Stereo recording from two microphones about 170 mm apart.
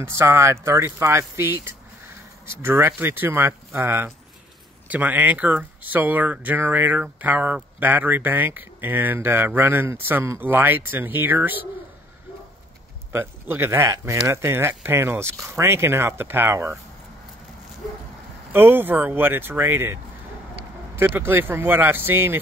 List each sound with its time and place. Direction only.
0.0 s speech: 15° right (ahead or behind)
13.1 s speech: 15° right (ahead or behind)
18.5 s speech: 15° right (ahead or behind)